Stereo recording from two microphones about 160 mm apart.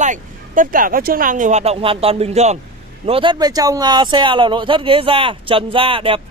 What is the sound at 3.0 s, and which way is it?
Speech, 35° right (ahead or behind).